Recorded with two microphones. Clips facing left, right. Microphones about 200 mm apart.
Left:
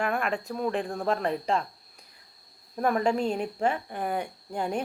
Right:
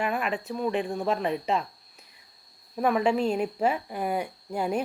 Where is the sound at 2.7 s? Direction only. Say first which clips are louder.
Right 1 dB; 5° right (ahead or behind).